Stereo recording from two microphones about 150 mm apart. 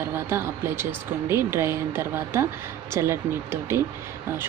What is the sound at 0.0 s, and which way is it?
Speech, 15° right (ahead or behind).